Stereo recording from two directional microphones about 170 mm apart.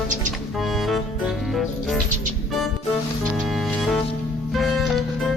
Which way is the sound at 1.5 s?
Centre (ahead or behind).